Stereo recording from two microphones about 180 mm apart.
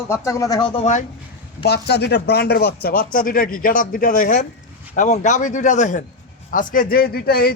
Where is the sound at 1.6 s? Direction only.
65° left (ahead or behind).